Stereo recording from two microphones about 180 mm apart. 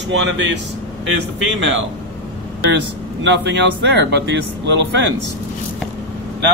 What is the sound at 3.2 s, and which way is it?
Speech, 80° right.